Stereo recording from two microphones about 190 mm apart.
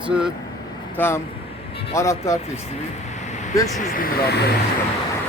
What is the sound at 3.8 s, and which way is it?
Speech, 45° left (ahead or behind).